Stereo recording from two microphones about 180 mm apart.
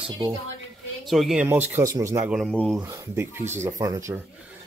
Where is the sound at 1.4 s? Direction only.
15° right (ahead or behind).